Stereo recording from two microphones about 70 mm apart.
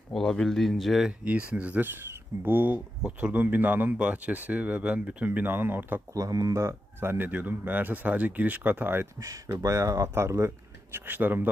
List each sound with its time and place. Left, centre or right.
0.1 s speech: centre
1.2 s speech: centre
6.1 s speech: right
6.5 s speech: right
9.1 s speech: right
10.9 s speech: right